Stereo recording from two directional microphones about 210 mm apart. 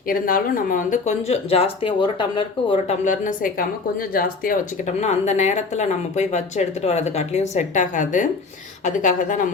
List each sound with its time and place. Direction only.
0.1 s speech: 40° left (ahead or behind)
4.9 s speech: 35° left (ahead or behind)